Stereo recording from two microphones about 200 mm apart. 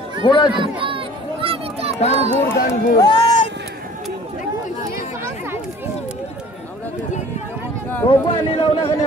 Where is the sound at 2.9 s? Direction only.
25° left (ahead or behind).